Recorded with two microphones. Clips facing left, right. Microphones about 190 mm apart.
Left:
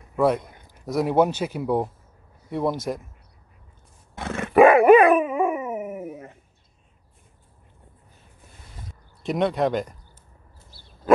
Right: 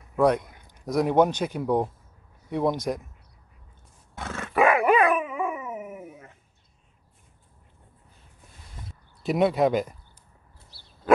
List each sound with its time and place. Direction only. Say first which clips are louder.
0.1 s a sound: even; 5° left (ahead or behind)
0.7 s speech: even; 5° left (ahead or behind)
4.2 s roar: left 5 dB; 15° left (ahead or behind)
4.6 s dog: left 8 dB; 30° left (ahead or behind); by 6.2 s 45° left (ahead or behind)
9.2 s speech: right 1 dB; 5° right (ahead or behind)